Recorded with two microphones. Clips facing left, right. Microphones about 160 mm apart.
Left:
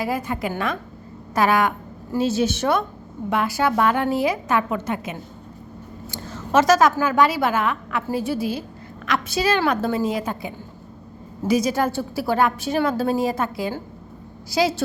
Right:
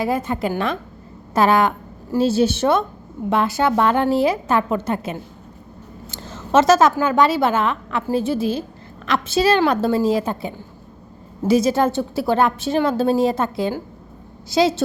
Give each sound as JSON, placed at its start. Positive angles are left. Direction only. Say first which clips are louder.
{"t": 0.0, "sound": "a woman's voice", "louder": "right 4 dB", "side_deg": -25}